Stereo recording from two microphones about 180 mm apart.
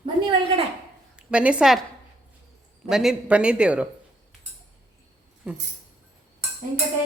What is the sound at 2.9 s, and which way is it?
Speech, centre (ahead or behind).